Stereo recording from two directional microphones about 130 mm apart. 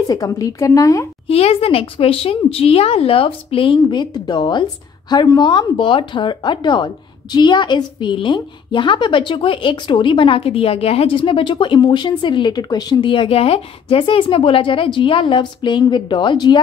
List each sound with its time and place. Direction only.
0.0 s a woman's voice: 30° left (ahead or behind)
1.2 s a woman's voice: 50° left (ahead or behind)